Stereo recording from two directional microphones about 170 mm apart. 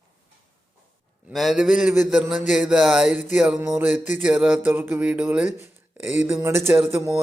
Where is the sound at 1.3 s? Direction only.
Centre (ahead or behind).